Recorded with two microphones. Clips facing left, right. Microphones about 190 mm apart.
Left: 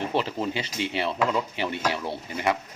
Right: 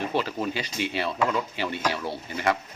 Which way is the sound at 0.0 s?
25° left (ahead or behind).